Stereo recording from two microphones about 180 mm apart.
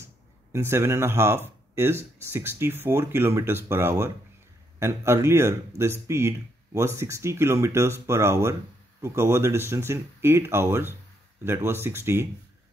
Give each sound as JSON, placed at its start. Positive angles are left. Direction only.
{"t": 0.0, "sound": "speech", "side_deg": -15}